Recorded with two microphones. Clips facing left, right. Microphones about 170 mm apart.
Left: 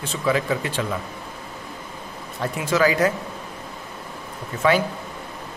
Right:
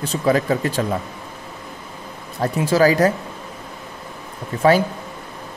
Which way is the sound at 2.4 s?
35° right (ahead or behind).